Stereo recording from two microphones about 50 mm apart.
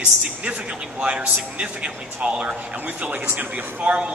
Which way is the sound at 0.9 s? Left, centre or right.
Right.